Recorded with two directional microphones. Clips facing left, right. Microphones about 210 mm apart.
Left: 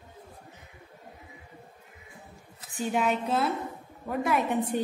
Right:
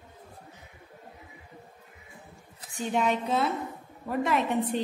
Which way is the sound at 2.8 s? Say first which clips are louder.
Even; 5° left (ahead or behind).